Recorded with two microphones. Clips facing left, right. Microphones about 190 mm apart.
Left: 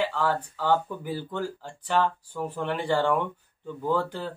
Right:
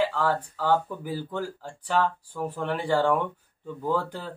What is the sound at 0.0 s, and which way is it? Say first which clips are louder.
Speech: right 1 dB; centre (ahead or behind).